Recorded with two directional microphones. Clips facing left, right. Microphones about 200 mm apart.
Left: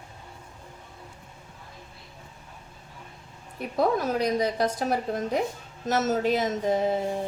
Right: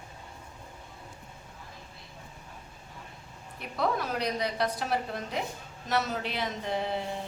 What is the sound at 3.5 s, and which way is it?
A woman's voice, 45° left (ahead or behind).